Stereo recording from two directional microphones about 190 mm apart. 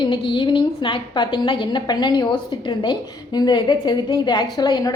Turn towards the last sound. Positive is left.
turn(degrees=20)  # may be behind; listen again after turning